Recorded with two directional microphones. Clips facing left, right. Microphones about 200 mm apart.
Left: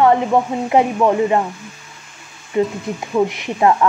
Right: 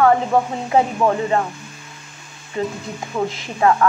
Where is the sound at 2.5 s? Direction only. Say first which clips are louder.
Left 6 dB; 20° left (ahead or behind).